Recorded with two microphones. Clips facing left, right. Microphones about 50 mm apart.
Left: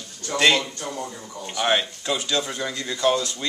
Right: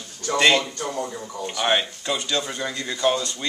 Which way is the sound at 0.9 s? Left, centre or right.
Centre.